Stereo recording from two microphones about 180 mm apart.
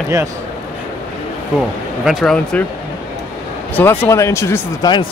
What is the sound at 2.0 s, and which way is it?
Speech, 5° left (ahead or behind).